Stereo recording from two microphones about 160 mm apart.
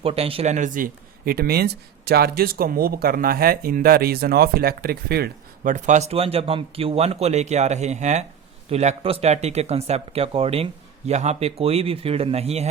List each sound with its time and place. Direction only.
0.0 s speech: 35° right (ahead or behind); by 5.7 s 75° right (ahead or behind)
5.7 s speech: 50° right (ahead or behind)